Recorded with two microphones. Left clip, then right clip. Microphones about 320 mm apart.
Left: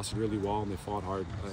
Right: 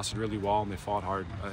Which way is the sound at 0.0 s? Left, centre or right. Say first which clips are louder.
Right 1 dB; centre.